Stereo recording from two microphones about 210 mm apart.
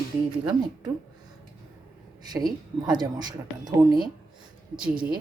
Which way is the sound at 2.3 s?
20° right (ahead or behind).